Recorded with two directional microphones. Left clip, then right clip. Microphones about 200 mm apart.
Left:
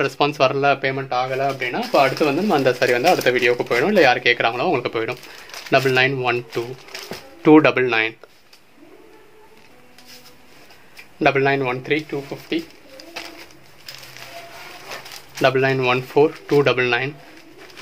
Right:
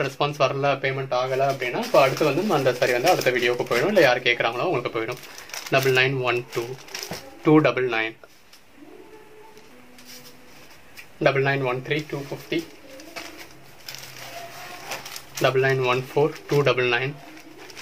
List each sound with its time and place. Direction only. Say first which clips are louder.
0.0 s speech: left 5 dB; 50° left (ahead or behind)
7.4 s speech: left 5 dB; 50° left (ahead or behind)
11.1 s speech: left 4 dB; 50° left (ahead or behind)
15.4 s speech: left 3 dB; 50° left (ahead or behind)